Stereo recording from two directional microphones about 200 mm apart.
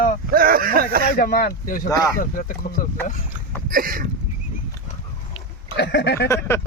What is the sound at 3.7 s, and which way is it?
Speech, 45° right (ahead or behind).